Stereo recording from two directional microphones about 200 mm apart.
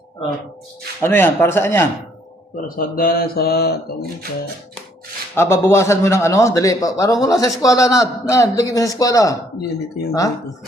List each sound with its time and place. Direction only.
1.0 s a man's voice: 10° left (ahead or behind)
2.6 s speech: 45° left (ahead or behind)
5.3 s a man's voice: 10° left (ahead or behind)